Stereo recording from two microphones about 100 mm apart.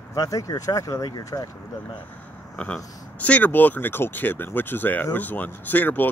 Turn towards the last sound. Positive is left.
turn(degrees=20)  # may be behind; listen again after turning